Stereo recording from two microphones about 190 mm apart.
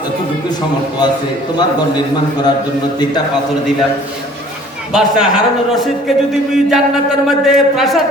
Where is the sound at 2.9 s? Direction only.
20° left (ahead or behind).